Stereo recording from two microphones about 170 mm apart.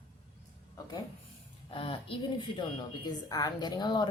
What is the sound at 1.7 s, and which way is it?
Speech, 30° left (ahead or behind).